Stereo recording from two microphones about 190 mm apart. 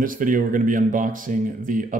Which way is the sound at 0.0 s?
45° right (ahead or behind).